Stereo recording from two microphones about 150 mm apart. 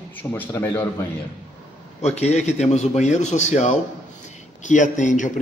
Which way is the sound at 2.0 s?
45° left (ahead or behind).